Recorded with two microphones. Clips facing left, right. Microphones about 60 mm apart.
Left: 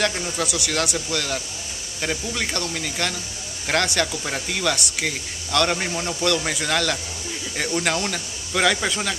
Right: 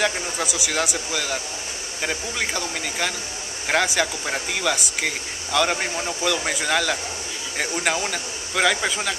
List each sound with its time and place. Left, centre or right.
0.0 s a man's voice: centre